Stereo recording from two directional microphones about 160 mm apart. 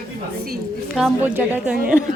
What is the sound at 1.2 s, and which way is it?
Speech, 10° right (ahead or behind).